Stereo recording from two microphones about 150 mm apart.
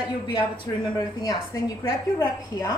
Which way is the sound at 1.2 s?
25° left (ahead or behind).